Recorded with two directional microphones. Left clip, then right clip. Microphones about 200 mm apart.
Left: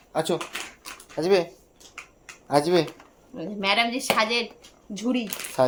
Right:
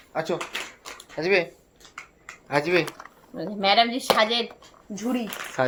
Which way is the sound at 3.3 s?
20° left (ahead or behind).